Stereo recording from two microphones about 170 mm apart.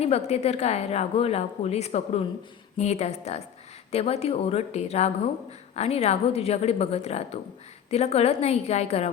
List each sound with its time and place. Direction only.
0.0 s a woman's voice: 35° left (ahead or behind)